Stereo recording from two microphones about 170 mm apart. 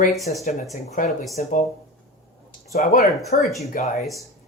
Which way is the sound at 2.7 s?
45° left (ahead or behind).